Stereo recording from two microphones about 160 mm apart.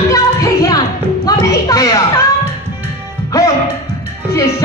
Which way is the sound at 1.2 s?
20° left (ahead or behind).